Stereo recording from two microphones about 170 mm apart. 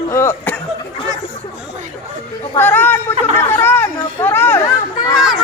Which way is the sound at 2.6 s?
10° left (ahead or behind).